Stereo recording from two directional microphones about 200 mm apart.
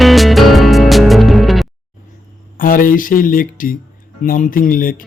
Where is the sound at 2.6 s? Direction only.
45° left (ahead or behind).